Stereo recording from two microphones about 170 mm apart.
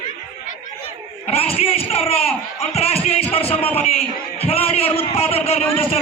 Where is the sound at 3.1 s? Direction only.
35° left (ahead or behind).